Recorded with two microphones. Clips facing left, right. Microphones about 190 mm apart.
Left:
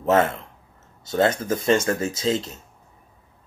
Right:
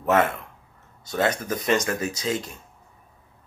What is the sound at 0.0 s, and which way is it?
Speech, 25° left (ahead or behind).